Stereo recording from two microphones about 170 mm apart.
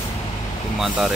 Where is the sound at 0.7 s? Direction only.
Centre (ahead or behind).